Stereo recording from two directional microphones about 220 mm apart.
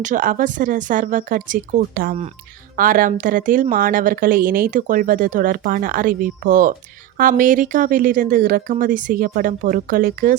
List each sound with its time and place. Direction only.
0.0 s speech: 35° right (ahead or behind)